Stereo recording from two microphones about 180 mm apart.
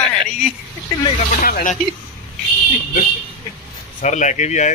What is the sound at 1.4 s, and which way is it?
Speech, 50° left (ahead or behind).